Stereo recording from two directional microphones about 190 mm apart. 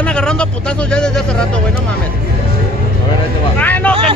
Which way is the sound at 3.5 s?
10° left (ahead or behind).